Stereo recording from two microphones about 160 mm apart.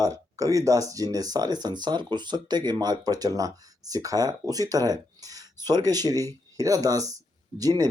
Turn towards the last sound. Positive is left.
turn(degrees=-25)  # may be behind; listen again after turning